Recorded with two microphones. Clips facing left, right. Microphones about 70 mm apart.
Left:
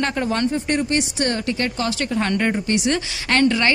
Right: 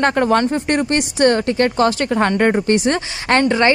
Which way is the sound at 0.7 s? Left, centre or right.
Right.